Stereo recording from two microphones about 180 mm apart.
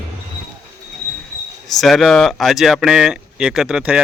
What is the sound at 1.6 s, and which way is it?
Speech, centre (ahead or behind).